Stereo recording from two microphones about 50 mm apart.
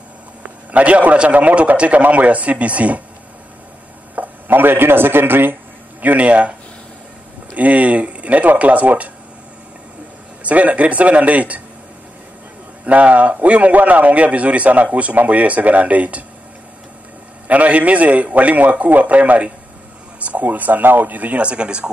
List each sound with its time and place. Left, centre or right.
0.4 s a man's voice: right
4.1 s speech: right
7.5 s a man's voice: right
10.4 s a man's voice: right
12.8 s a man's voice: right
17.5 s a man's voice: right